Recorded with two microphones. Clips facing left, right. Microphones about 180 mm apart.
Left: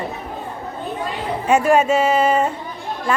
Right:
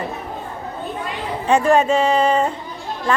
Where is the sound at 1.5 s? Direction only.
10° left (ahead or behind).